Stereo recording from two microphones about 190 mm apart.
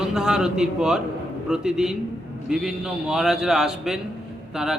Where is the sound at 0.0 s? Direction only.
5° right (ahead or behind).